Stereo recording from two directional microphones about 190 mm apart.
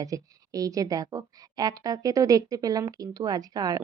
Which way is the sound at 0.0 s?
20° right (ahead or behind).